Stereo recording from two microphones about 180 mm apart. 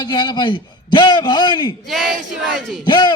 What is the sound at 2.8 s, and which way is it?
Speech, 25° left (ahead or behind).